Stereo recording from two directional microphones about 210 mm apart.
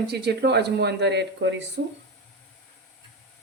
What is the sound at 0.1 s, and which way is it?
Speech, 50° right (ahead or behind).